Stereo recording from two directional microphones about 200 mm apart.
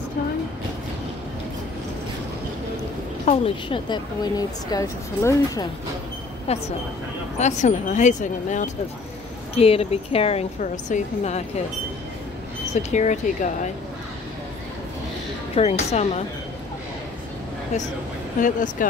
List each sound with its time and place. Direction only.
3.3 s speech: 25° left (ahead or behind)
6.5 s a woman's voice: 30° left (ahead or behind)
12.9 s a woman's voice: 35° left (ahead or behind)
15.5 s a woman's voice: 30° left (ahead or behind)
18.4 s a woman's voice: 40° left (ahead or behind)